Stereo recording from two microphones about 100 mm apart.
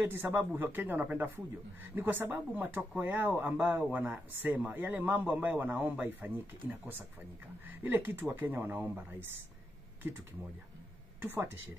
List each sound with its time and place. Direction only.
0.0 s speech: 20° right (ahead or behind)
11.1 s speech: 20° right (ahead or behind)